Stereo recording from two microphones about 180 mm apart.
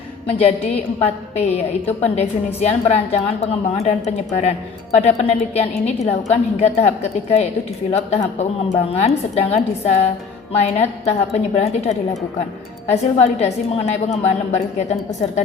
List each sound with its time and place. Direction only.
0.3 s a woman's voice: 35° left (ahead or behind)